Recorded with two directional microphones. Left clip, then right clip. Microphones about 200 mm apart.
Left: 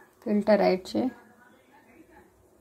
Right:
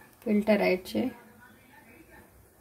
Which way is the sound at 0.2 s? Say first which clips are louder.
Left 3 dB; 10° left (ahead or behind).